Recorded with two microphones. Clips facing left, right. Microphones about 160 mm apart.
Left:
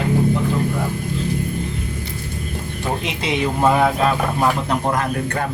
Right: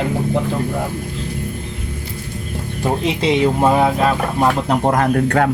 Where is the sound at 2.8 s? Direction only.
35° right (ahead or behind).